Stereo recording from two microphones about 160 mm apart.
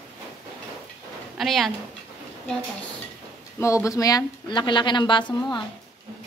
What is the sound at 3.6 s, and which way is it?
A woman's voice, 20° left (ahead or behind).